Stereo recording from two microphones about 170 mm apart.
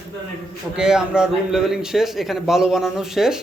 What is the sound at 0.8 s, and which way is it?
A man's voice, 5° right (ahead or behind).